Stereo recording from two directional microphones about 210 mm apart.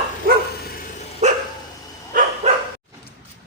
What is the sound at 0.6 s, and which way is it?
Dog, 40° left (ahead or behind).